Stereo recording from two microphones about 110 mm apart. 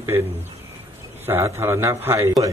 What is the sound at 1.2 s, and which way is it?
Speech, 25° right (ahead or behind).